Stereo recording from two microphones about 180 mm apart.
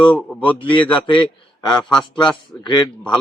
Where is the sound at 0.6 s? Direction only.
25° left (ahead or behind).